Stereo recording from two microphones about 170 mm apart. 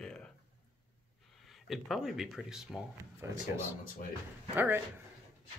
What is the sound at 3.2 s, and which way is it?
Speech, 15° right (ahead or behind).